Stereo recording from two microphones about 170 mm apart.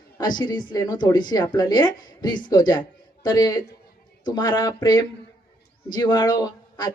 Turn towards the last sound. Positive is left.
turn(degrees=25)  # may be behind; listen again after turning